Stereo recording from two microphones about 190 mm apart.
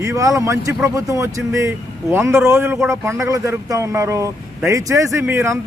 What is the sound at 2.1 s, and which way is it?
Speech, 15° right (ahead or behind).